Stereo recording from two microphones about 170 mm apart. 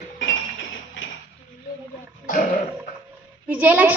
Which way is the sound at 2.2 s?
50° left (ahead or behind).